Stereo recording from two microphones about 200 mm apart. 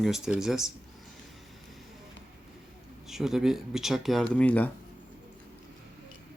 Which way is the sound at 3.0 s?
Centre (ahead or behind).